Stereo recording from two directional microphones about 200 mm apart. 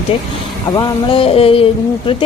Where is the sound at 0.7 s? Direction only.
25° left (ahead or behind).